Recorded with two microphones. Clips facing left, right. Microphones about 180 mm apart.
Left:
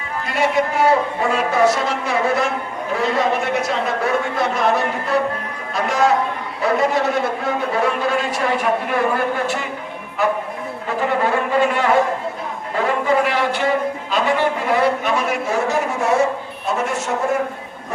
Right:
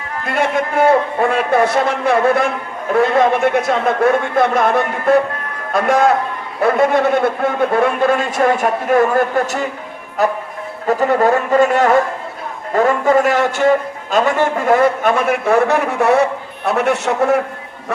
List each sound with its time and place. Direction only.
0.3 s a man's voice: 50° right (ahead or behind); by 17.0 s 65° right (ahead or behind)